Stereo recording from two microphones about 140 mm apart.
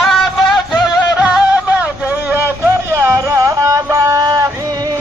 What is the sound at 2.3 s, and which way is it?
Music, 20° right (ahead or behind).